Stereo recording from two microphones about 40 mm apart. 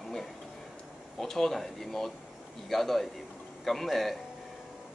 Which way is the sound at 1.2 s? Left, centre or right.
Centre.